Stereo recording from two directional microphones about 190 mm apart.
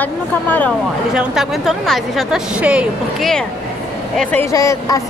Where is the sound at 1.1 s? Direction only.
5° right (ahead or behind).